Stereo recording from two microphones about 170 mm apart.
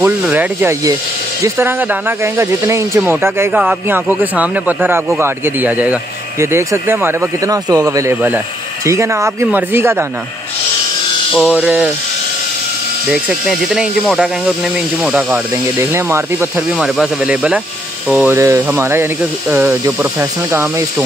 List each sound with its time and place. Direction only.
0.0 s speech: 15° right (ahead or behind)
11.3 s speech: 5° right (ahead or behind)
13.1 s speech: 5° right (ahead or behind)
16.7 s speech: centre (ahead or behind)